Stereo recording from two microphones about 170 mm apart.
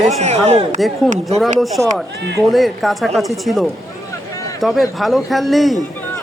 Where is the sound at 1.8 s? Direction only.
15° left (ahead or behind).